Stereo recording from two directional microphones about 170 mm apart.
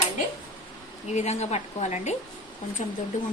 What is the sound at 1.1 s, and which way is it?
A woman's voice, 40° left (ahead or behind).